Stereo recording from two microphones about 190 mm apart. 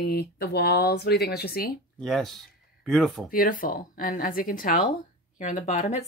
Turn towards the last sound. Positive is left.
turn(degrees=40)  # may be behind; listen again after turning